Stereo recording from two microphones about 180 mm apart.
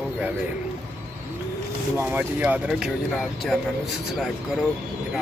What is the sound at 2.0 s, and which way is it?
Speech, 10° right (ahead or behind).